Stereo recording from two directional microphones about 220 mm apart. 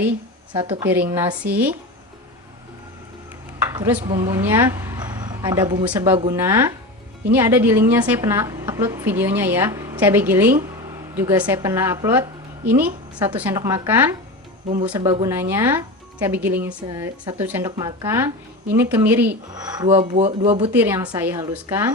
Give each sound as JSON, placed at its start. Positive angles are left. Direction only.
{"t": 0.5, "sound": "speech", "side_deg": -20}
{"t": 0.9, "sound": "a woman's voice", "side_deg": -10}
{"t": 3.8, "sound": "a woman's voice", "side_deg": -10}
{"t": 20.1, "sound": "speech", "side_deg": -30}
{"t": 20.6, "sound": "a woman's voice", "side_deg": -10}